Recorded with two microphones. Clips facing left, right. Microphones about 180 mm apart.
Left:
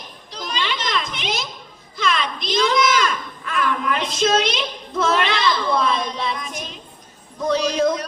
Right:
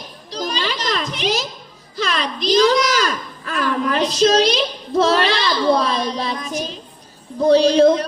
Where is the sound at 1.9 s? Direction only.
35° right (ahead or behind).